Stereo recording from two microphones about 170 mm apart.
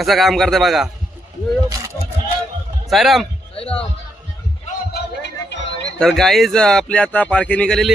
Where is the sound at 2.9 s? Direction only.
Centre (ahead or behind).